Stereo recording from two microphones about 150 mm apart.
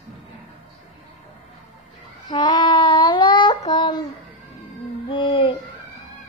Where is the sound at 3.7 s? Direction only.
30° left (ahead or behind).